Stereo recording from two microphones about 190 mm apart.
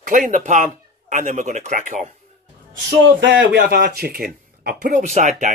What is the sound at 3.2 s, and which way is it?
Speech, 65° right (ahead or behind).